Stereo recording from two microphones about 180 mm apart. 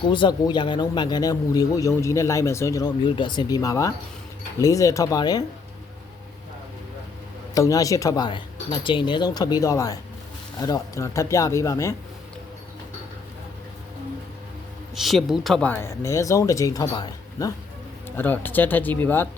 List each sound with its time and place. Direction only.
0.0 s speech: 25° left (ahead or behind)
7.5 s speech: 20° left (ahead or behind)
14.9 s speech: centre (ahead or behind)